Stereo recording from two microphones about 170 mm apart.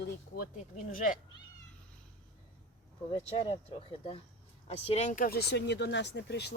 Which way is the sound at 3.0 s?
35° left (ahead or behind).